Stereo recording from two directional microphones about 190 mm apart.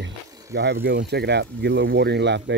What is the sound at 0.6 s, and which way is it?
Speech, 60° right (ahead or behind).